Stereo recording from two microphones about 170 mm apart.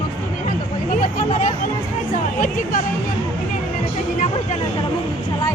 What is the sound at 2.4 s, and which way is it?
Speech, 50° left (ahead or behind).